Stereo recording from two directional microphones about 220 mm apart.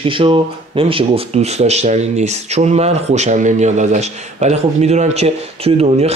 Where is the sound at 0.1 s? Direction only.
25° right (ahead or behind).